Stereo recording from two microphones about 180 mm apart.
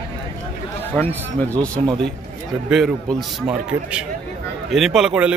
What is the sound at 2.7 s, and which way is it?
A man's voice, centre (ahead or behind).